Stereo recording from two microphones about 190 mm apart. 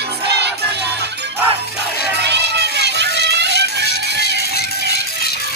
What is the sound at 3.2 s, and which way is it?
Music, 65° right (ahead or behind).